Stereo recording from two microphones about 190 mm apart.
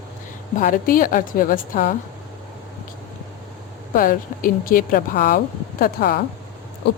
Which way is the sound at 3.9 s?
50° left (ahead or behind).